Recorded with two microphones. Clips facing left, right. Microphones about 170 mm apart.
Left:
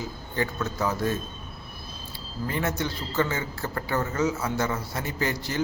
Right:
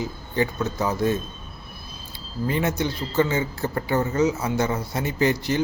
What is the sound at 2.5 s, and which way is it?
A man's voice, 20° right (ahead or behind).